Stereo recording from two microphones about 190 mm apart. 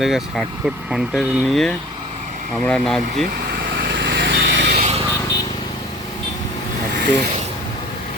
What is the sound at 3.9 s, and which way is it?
Vehicle, 65° right (ahead or behind).